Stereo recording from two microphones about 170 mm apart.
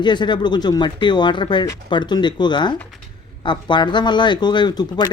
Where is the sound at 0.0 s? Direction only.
25° left (ahead or behind).